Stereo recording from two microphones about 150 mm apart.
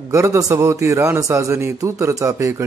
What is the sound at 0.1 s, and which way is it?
A man's voice, 20° right (ahead or behind).